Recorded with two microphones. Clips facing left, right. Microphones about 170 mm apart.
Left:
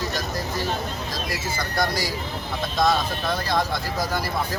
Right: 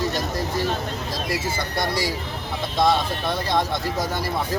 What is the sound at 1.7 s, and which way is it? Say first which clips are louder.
Speech: left 1 dB; 30° right (ahead or behind).